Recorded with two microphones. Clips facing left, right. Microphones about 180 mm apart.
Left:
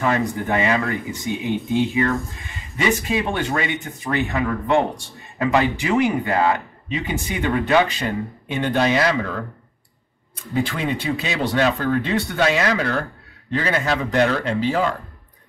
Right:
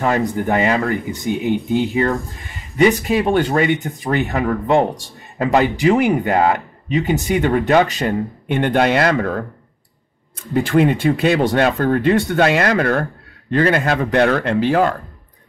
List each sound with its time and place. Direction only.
0.0 s speech: 40° right (ahead or behind)
2.8 s speech: 40° right (ahead or behind); by 15.0 s 60° right (ahead or behind)